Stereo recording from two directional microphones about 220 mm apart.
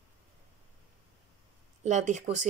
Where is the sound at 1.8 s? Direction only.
30° right (ahead or behind).